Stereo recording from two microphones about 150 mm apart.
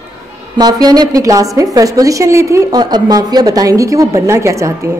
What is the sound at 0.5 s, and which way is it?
A woman's voice, 25° right (ahead or behind).